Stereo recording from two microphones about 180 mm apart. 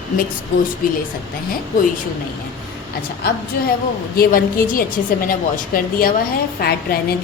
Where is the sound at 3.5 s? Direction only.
60° left (ahead or behind).